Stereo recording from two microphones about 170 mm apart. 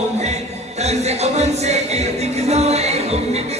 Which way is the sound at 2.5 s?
40° right (ahead or behind).